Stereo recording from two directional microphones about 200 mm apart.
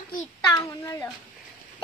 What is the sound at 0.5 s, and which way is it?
Speech, 15° left (ahead or behind).